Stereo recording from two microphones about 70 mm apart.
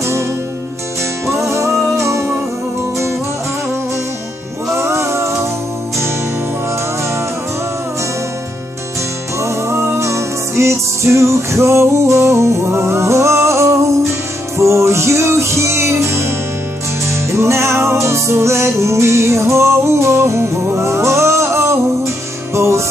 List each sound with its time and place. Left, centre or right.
2.0 s music: right
4.7 s music: right
9.4 s music: right